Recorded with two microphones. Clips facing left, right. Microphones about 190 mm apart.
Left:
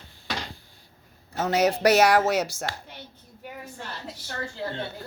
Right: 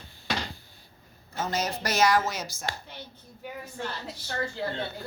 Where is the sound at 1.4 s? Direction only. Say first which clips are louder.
Left 8 dB; 70° left (ahead or behind).